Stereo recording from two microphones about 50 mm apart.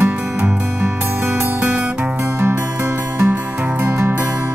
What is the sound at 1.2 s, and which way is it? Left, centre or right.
Music, right.